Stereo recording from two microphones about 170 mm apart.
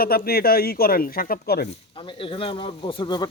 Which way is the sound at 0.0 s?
65° left (ahead or behind).